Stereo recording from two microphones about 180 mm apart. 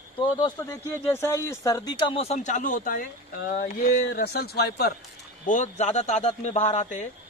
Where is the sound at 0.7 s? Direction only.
15° left (ahead or behind); by 4.9 s 60° left (ahead or behind).